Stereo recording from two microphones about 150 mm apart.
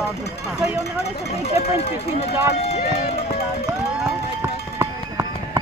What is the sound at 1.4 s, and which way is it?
Speech, 45° left (ahead or behind).